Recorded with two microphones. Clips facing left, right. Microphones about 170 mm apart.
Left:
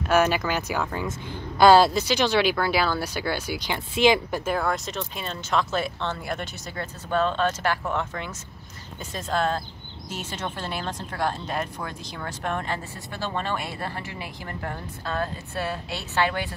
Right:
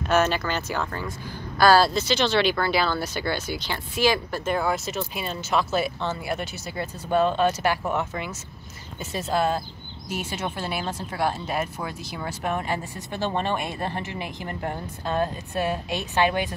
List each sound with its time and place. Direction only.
0.1 s a woman's voice: 10° left (ahead or behind)
4.5 s speech: centre (ahead or behind)